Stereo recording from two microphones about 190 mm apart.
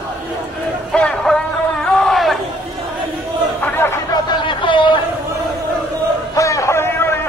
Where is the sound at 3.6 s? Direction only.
10° left (ahead or behind).